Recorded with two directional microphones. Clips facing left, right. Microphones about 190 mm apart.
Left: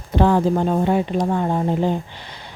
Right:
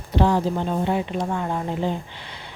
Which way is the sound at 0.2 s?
50° left (ahead or behind).